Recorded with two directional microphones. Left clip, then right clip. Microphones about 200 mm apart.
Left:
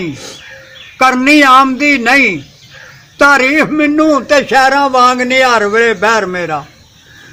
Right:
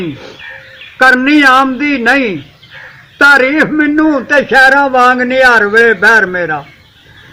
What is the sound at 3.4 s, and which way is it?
A man's voice, 30° left (ahead or behind).